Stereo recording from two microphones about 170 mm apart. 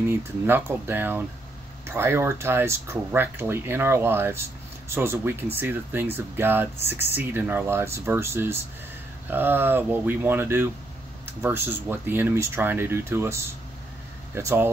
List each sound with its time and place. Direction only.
0.1 s speech: 15° right (ahead or behind)